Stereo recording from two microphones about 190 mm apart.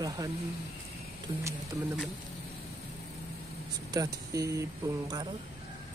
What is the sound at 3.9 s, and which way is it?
Speech, 15° right (ahead or behind).